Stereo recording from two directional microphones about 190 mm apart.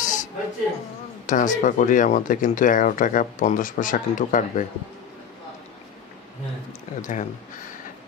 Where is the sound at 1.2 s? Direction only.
40° left (ahead or behind).